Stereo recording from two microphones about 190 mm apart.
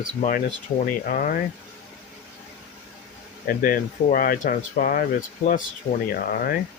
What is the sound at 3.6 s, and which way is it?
Speech, 50° left (ahead or behind).